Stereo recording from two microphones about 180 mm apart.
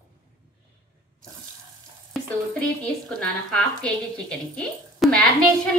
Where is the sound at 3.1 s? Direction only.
5° left (ahead or behind).